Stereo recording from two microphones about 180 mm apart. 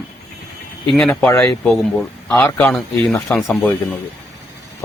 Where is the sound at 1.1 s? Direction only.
15° left (ahead or behind).